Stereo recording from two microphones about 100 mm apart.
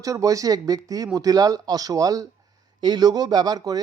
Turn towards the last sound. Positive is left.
turn(degrees=-40)  # may be behind; listen again after turning